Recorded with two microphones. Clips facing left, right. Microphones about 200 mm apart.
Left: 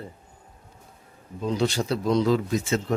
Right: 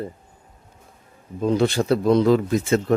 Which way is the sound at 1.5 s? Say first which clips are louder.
Right 6 dB; 55° right (ahead or behind).